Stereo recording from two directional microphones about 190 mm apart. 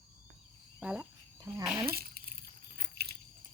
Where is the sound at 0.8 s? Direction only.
5° right (ahead or behind).